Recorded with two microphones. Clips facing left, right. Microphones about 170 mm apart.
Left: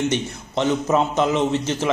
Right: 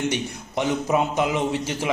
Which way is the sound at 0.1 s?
15° right (ahead or behind).